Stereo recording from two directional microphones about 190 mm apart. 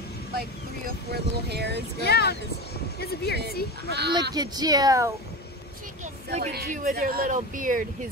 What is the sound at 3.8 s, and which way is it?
Speech, 60° right (ahead or behind).